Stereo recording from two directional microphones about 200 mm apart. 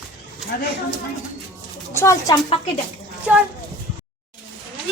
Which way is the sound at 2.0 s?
15° left (ahead or behind).